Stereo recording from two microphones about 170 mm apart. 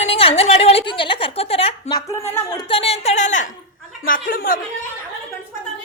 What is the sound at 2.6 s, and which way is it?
A woman's voice, 30° left (ahead or behind).